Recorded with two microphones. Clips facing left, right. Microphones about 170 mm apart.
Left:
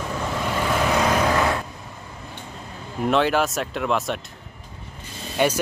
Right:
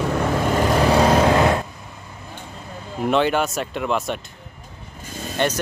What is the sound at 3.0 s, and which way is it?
Speech, centre (ahead or behind).